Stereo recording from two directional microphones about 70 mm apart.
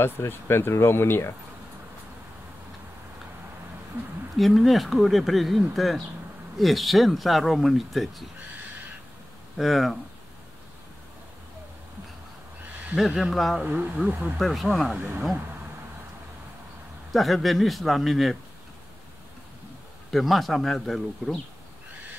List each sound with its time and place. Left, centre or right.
0.0 s speech: left
4.4 s speech: centre
9.6 s speech: centre
12.9 s speech: centre
13.7 s speech: right
14.4 s speech: centre
17.1 s speech: centre
20.1 s speech: centre